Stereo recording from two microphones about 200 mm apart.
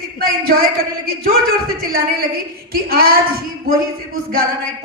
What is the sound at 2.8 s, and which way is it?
Speech, 45° right (ahead or behind).